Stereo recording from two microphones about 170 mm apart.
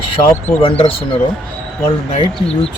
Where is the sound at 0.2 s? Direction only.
35° left (ahead or behind).